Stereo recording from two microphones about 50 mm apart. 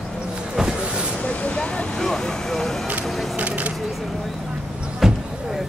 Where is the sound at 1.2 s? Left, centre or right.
Left.